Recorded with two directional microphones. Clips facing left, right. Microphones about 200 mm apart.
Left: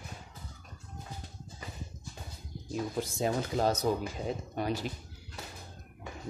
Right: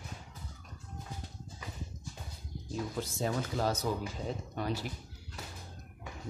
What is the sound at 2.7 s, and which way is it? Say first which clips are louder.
Speech: left 3 dB; 15° left (ahead or behind).